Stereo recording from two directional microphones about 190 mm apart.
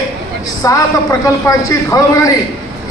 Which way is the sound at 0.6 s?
20° left (ahead or behind).